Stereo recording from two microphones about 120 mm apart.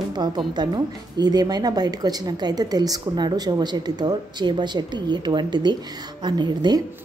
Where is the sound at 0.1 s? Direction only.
35° right (ahead or behind).